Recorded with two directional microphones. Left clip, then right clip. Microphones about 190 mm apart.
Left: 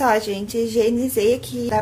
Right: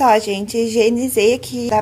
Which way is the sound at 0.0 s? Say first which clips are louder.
Right 5 dB; 25° right (ahead or behind).